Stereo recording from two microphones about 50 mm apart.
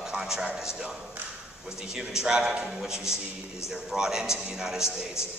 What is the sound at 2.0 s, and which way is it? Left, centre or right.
A man's voice, centre.